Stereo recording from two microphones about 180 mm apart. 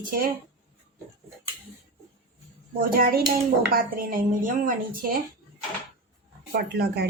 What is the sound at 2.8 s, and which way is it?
A woman's voice, 55° right (ahead or behind).